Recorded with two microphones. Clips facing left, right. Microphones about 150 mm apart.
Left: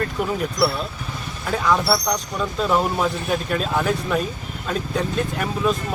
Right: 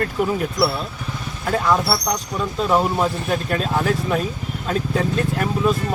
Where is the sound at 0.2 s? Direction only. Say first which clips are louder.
Right 4 dB; 5° right (ahead or behind).